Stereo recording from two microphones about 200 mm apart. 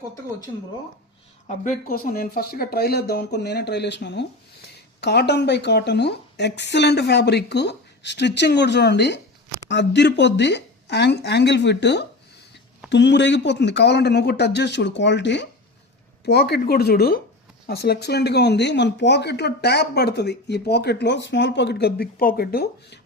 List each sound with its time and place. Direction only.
1.5 s speech: 40° left (ahead or behind)